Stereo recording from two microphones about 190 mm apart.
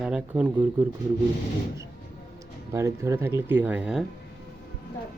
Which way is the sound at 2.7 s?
15° right (ahead or behind).